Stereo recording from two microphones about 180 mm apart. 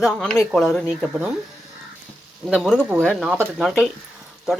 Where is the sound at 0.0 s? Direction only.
5° left (ahead or behind).